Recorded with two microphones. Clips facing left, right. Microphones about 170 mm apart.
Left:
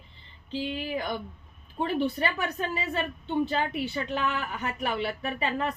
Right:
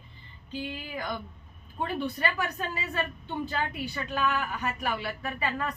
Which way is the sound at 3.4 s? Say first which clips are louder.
Left 4 dB; 25° left (ahead or behind).